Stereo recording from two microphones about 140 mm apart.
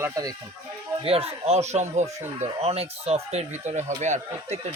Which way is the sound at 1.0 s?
45° right (ahead or behind).